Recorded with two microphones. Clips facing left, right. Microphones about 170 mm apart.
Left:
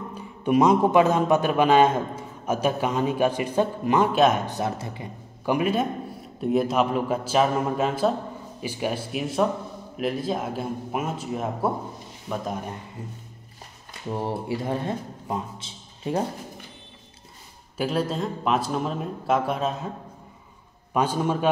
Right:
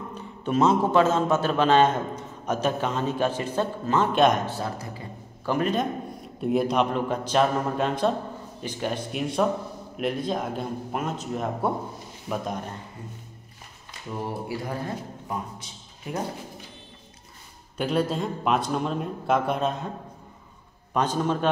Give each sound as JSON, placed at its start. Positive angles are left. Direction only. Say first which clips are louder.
{"t": 0.1, "sound": "a man's voice", "louder": "left 5 dB", "side_deg": 10}
{"t": 4.5, "sound": "a man's voice", "louder": "left 3 dB", "side_deg": 20}
{"t": 14.0, "sound": "a man's voice", "louder": "left 3 dB", "side_deg": 25}
{"t": 17.7, "sound": "a man's voice", "louder": "even", "side_deg": 0}
{"t": 20.9, "sound": "a man's voice", "louder": "left 1 dB", "side_deg": 10}